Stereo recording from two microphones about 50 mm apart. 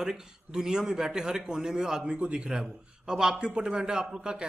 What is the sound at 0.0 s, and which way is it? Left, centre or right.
A man's voice, centre.